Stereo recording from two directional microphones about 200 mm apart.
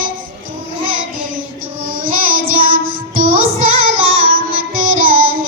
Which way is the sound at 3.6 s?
90° right.